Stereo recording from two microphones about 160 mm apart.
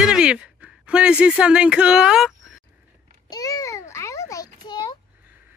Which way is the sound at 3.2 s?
20° left (ahead or behind).